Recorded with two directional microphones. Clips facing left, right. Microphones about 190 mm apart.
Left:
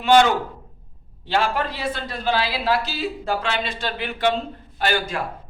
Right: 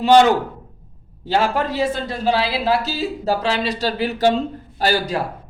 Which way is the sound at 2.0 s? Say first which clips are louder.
Right 4 dB; 30° right (ahead or behind).